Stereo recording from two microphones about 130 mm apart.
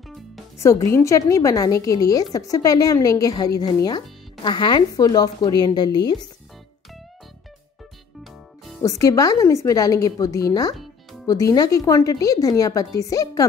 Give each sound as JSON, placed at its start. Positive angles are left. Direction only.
{"t": 0.6, "sound": "a woman's voice", "side_deg": 20}
{"t": 8.8, "sound": "a woman's voice", "side_deg": 25}